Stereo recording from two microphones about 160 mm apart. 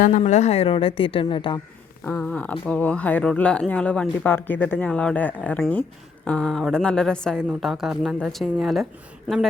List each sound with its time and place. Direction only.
0.0 s a woman's voice: 50° left (ahead or behind); by 1.5 s 30° left (ahead or behind)
2.0 s a woman's voice: 10° left (ahead or behind)